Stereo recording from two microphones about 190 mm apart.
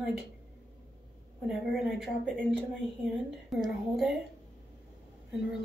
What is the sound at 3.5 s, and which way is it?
Speech, centre (ahead or behind).